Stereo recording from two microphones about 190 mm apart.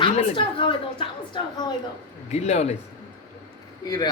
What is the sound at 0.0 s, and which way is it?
A woman's voice, 30° left (ahead or behind).